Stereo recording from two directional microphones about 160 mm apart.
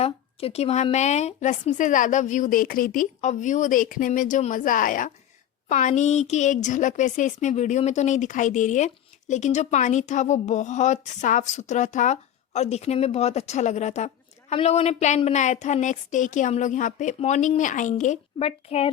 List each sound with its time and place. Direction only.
0.0 s a woman's voice: 40° left (ahead or behind)